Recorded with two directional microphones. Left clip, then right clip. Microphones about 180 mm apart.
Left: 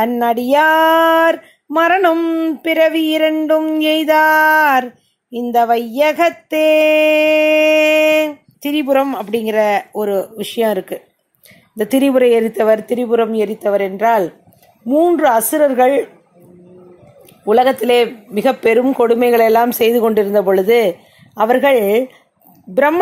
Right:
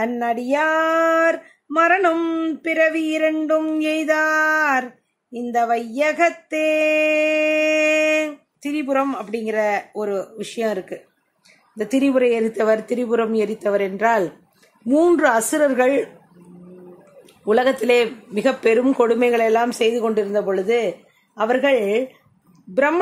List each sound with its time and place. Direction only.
0.0 s a man's voice: 20° left (ahead or behind); by 16.1 s 5° left (ahead or behind)
17.5 s a man's voice: 10° left (ahead or behind)